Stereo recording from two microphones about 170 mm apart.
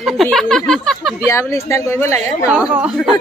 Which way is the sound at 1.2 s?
15° left (ahead or behind).